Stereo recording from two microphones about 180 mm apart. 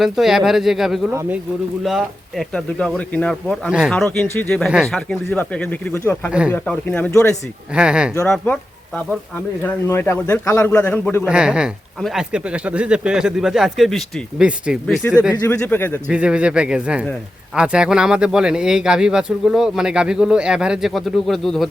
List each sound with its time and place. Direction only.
0.0 s speech: centre (ahead or behind)
1.1 s speech: 15° right (ahead or behind)
1.8 s a man's voice: centre (ahead or behind)
7.8 s speech: 5° right (ahead or behind)
8.2 s speech: 5° left (ahead or behind)
9.6 s a man's voice: 15° left (ahead or behind)
11.3 s speech: 5° right (ahead or behind)
15.4 s a man's voice: 10° left (ahead or behind)
16.0 s speech: 5° right (ahead or behind)